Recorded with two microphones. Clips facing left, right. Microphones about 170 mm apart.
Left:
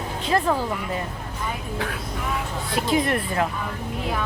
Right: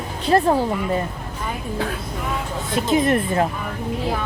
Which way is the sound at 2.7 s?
20° right (ahead or behind).